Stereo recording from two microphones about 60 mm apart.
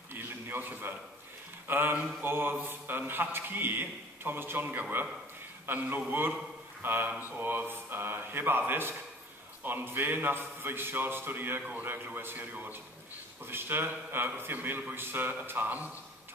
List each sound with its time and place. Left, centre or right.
0.1 s a sound: right
1.7 s a man's voice: right
13.5 s a man's voice: right